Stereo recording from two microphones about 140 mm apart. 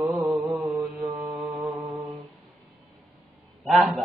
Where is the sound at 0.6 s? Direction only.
25° right (ahead or behind).